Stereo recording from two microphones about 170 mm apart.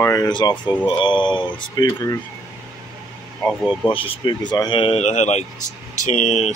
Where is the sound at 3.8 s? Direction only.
30° left (ahead or behind).